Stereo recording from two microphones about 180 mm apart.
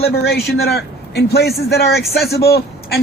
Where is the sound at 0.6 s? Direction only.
60° left (ahead or behind).